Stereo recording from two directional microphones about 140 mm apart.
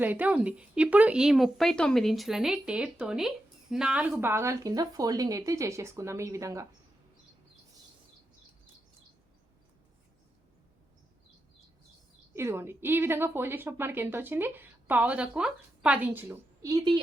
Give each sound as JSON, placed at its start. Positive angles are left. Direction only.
{"t": 0.0, "sound": "speech", "side_deg": -10}
{"t": 12.3, "sound": "speech", "side_deg": -20}
{"t": 16.6, "sound": "speech", "side_deg": -30}